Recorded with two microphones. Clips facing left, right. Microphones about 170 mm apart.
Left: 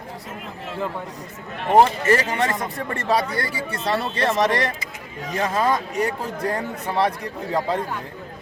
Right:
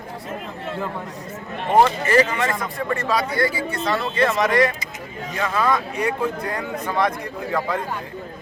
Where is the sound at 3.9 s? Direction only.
35° left (ahead or behind).